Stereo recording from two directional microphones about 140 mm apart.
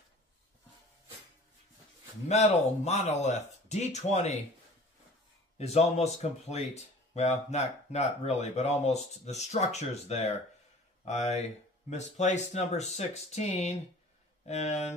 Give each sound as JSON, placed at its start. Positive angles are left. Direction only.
{"t": 2.2, "sound": "speech", "side_deg": 50}
{"t": 5.6, "sound": "speech", "side_deg": 50}